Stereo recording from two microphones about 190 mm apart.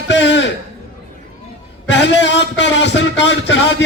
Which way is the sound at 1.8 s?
70° left (ahead or behind).